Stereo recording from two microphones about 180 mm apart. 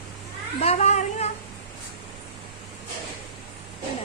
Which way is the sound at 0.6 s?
35° left (ahead or behind).